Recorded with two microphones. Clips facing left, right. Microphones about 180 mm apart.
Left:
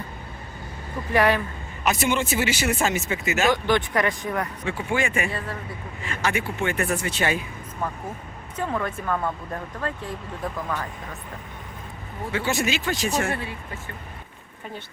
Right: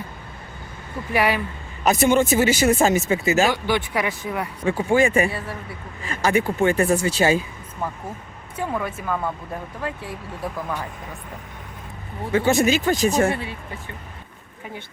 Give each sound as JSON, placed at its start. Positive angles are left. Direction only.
{"t": 1.1, "sound": "speech", "side_deg": -10}
{"t": 1.8, "sound": "speech", "side_deg": -45}
{"t": 3.5, "sound": "speech", "side_deg": -5}
{"t": 4.6, "sound": "speech", "side_deg": -35}
{"t": 8.5, "sound": "speech", "side_deg": -10}
{"t": 12.3, "sound": "speech", "side_deg": -45}